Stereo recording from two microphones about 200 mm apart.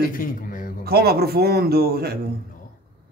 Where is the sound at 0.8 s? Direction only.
50° right (ahead or behind).